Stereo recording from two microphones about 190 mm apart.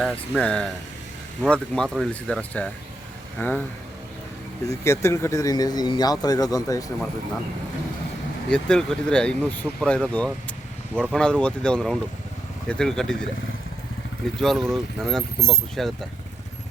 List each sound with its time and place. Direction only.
0.0 s speech: 5° left (ahead or behind)
4.7 s speech: 15° left (ahead or behind)
8.4 s speech: 5° left (ahead or behind)
14.3 s speech: centre (ahead or behind)